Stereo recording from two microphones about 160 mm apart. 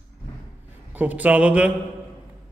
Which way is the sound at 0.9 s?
10° right (ahead or behind).